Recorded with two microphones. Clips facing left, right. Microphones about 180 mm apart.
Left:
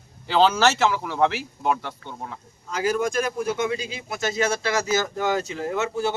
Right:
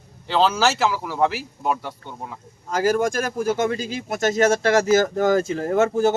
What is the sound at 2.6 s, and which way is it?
Speech, 50° right (ahead or behind).